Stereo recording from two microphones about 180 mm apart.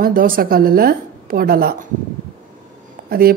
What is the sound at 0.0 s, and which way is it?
A woman's voice, 50° right (ahead or behind).